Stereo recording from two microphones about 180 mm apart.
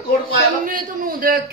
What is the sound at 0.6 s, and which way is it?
Speech, 50° right (ahead or behind).